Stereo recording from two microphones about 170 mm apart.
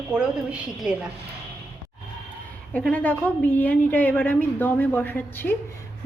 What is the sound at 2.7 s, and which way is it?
A woman's voice, 10° left (ahead or behind).